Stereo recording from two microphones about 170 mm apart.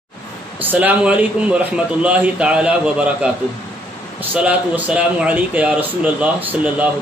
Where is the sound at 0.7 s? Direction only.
10° right (ahead or behind).